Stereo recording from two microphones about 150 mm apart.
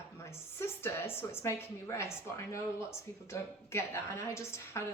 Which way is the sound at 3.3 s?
20° left (ahead or behind).